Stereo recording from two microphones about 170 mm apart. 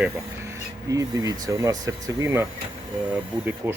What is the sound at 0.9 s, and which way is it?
Speech, 20° right (ahead or behind).